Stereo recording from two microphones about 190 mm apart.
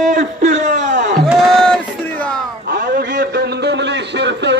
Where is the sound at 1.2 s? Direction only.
Centre (ahead or behind).